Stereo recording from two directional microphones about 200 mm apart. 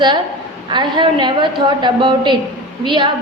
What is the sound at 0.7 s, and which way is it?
A woman's voice, 25° right (ahead or behind).